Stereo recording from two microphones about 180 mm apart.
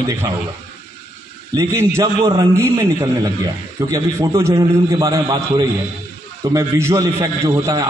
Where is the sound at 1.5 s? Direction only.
15° right (ahead or behind).